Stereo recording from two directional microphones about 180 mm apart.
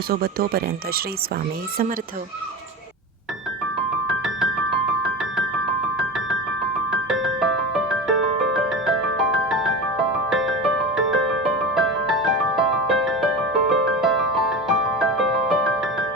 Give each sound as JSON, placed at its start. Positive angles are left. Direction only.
{"t": 0.1, "sound": "speech", "side_deg": -55}
{"t": 6.0, "sound": "keyboard", "side_deg": -5}
{"t": 6.9, "sound": "music", "side_deg": 0}